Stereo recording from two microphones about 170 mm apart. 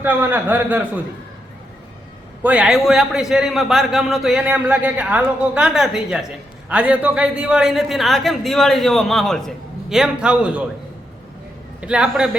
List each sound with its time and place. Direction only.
0.0 s a man's voice: 10° right (ahead or behind)
2.4 s a man's voice: 5° right (ahead or behind)
11.8 s a man's voice: 5° right (ahead or behind)